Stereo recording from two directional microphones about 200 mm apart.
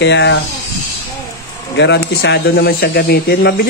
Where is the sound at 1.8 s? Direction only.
60° left (ahead or behind).